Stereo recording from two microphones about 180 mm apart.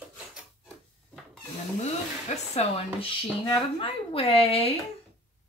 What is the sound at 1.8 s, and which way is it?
A woman's voice, 35° left (ahead or behind).